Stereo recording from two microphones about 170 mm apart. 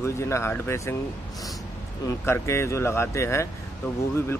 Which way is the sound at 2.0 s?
15° left (ahead or behind).